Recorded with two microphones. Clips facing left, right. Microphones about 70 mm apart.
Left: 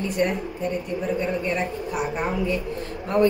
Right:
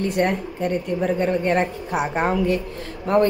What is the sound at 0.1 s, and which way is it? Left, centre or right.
A woman's voice, right.